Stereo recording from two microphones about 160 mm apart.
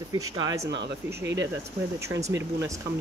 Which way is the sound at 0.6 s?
90° right.